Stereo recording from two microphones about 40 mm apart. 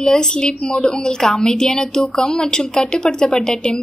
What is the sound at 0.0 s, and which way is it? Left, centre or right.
A woman's voice, centre.